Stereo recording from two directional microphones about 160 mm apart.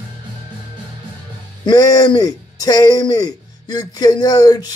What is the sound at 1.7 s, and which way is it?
Speech, 25° left (ahead or behind).